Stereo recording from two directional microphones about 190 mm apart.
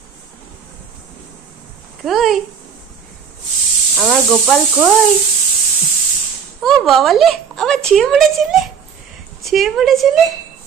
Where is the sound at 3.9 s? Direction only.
Centre (ahead or behind).